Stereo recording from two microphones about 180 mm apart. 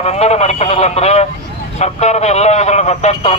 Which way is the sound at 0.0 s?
35° left (ahead or behind).